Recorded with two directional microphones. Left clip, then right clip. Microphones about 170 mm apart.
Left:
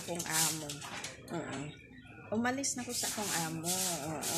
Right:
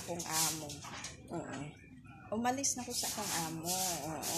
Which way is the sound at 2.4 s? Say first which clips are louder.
Even; 15° left (ahead or behind).